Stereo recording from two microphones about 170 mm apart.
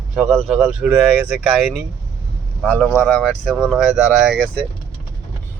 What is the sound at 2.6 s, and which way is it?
Speech, 10° left (ahead or behind).